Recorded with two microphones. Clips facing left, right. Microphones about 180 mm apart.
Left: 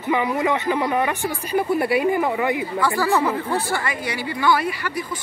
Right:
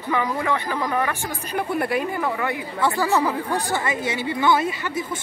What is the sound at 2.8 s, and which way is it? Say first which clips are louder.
Speech: right 1 dB; 20° right (ahead or behind).